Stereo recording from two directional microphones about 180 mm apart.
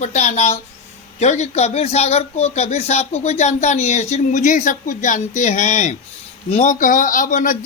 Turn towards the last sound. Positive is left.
turn(degrees=45)  # may be behind; listen again after turning